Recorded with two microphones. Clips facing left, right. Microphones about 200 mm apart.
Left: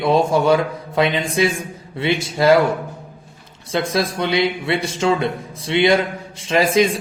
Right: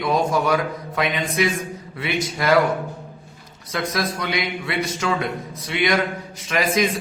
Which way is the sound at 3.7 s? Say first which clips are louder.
Left 5 dB; 30° left (ahead or behind).